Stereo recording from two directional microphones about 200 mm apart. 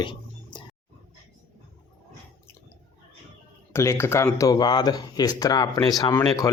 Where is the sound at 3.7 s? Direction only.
15° left (ahead or behind).